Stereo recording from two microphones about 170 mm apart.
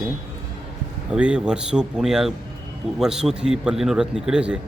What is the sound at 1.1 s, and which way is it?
Speech, 5° right (ahead or behind).